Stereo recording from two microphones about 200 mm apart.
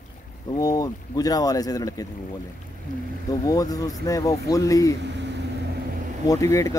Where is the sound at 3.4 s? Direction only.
20° left (ahead or behind).